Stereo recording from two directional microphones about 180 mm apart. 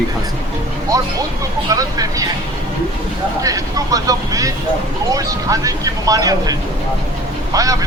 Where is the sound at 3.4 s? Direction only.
20° right (ahead or behind).